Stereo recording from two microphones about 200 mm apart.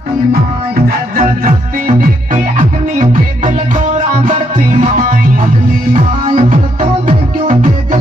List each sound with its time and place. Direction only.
0.8 s music: 45° right (ahead or behind)
6.2 s music: 35° right (ahead or behind)